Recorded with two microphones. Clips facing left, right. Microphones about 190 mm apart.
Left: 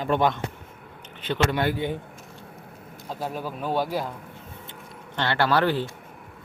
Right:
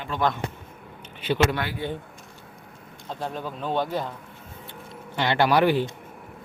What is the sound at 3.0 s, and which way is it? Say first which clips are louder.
Speech: left 1 dB; 5° left (ahead or behind).